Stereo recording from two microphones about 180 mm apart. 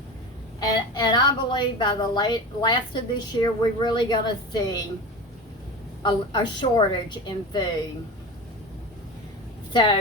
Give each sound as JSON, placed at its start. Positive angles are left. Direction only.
{"t": 0.6, "sound": "a woman's voice", "side_deg": 25}
{"t": 6.0, "sound": "a woman's voice", "side_deg": 25}
{"t": 9.7, "sound": "a woman's voice", "side_deg": 25}